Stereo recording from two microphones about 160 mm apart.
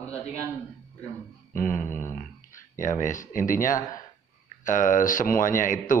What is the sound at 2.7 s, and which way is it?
A man's voice, 50° left (ahead or behind).